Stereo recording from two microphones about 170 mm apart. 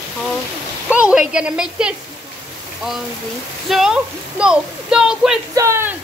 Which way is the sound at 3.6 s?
Centre (ahead or behind).